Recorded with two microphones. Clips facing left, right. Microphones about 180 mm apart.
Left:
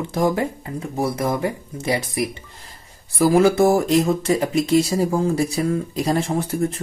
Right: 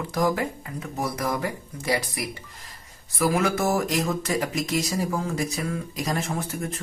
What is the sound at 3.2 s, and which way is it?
Speech, 30° left (ahead or behind).